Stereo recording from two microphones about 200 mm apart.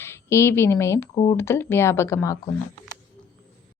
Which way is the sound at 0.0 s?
15° left (ahead or behind).